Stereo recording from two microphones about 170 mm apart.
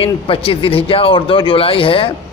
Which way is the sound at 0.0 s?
35° left (ahead or behind).